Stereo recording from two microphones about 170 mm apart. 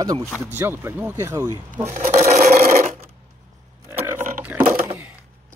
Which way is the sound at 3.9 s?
15° right (ahead or behind).